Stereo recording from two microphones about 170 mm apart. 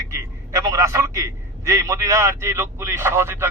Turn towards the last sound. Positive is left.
turn(degrees=-15)  # may be behind; listen again after turning